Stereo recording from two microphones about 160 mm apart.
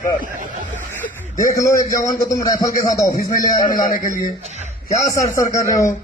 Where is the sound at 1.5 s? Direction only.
20° left (ahead or behind).